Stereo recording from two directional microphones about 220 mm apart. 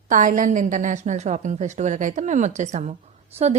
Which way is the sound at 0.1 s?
35° right (ahead or behind).